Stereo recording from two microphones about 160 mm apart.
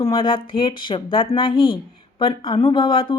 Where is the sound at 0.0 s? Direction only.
30° left (ahead or behind).